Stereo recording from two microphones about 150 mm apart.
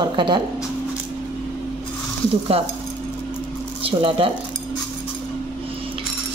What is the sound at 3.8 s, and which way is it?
Speech, 40° right (ahead or behind).